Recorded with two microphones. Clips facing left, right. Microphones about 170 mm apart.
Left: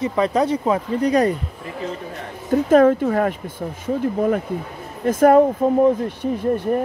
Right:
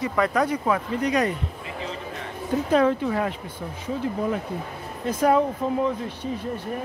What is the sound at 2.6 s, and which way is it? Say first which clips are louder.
Speech: left 7 dB; 50° left (ahead or behind).